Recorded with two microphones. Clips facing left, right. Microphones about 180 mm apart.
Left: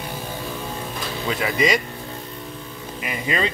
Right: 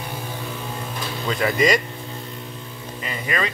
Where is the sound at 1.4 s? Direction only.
Centre (ahead or behind).